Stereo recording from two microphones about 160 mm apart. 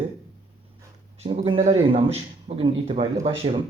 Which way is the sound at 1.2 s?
35° right (ahead or behind).